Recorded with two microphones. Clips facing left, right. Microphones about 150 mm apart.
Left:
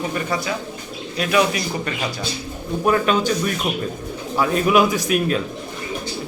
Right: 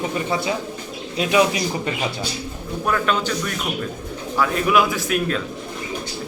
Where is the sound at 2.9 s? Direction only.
20° left (ahead or behind).